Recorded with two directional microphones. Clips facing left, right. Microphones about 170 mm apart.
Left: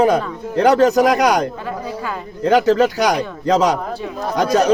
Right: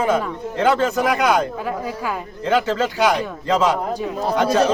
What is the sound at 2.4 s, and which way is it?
A man's voice, 40° left (ahead or behind).